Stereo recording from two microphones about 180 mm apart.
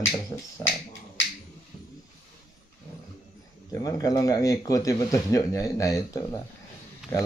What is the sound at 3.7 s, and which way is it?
Speech, 20° left (ahead or behind).